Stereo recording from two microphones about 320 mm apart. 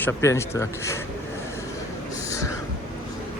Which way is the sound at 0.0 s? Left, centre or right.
Centre.